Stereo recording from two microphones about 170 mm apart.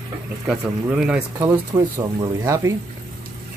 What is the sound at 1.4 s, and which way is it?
Speech, 15° right (ahead or behind).